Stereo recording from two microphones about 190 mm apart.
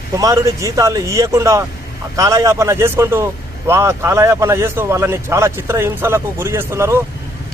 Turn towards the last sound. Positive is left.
turn(degrees=-15)  # may be behind; listen again after turning